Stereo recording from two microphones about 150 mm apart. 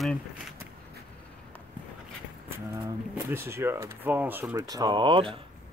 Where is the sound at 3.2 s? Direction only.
15° right (ahead or behind); by 5.4 s 35° right (ahead or behind).